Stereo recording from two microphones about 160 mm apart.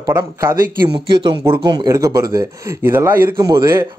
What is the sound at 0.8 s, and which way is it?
Speech, 30° right (ahead or behind).